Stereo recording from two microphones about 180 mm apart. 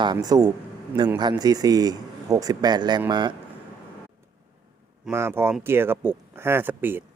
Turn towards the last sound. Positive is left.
turn(degrees=-10)  # may be behind; listen again after turning